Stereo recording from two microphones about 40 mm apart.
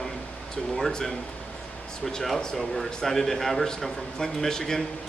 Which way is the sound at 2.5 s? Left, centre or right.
Centre.